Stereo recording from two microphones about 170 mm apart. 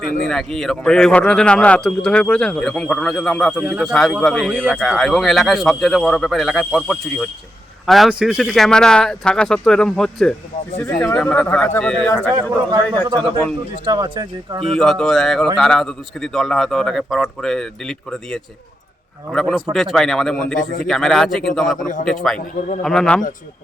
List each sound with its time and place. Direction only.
0.3 s speech: centre (ahead or behind)
10.8 s speech: 15° left (ahead or behind)
12.3 s speech: 25° right (ahead or behind)
14.8 s speech: 5° left (ahead or behind)